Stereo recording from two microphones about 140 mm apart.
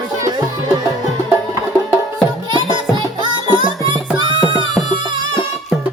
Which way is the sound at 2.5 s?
35° right (ahead or behind).